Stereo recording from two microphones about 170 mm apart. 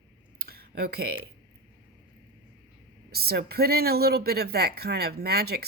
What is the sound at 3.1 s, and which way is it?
Speech, 70° right (ahead or behind).